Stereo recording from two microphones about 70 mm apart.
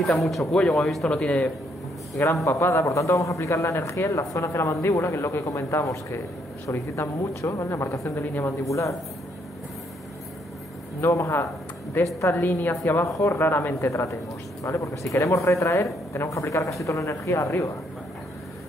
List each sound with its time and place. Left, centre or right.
0.0 s speech: centre
2.2 s a man's voice: left
2.6 s a man's voice: left
11.0 s a man's voice: left
12.0 s a woman's voice: left